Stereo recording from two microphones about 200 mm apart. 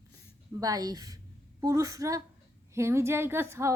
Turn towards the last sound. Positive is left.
turn(degrees=-10)  # may be behind; listen again after turning